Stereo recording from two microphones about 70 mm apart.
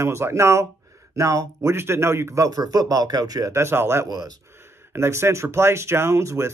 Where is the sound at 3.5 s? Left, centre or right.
Right.